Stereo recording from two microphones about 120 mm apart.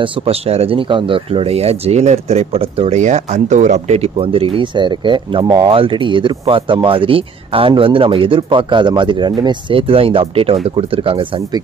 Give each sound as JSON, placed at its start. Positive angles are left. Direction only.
{"t": 0.0, "sound": "speech", "side_deg": -50}
{"t": 3.0, "sound": "speech", "side_deg": -85}
{"t": 5.7, "sound": "speech", "side_deg": -45}